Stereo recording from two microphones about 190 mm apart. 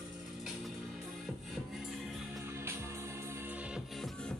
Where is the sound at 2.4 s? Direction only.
15° right (ahead or behind).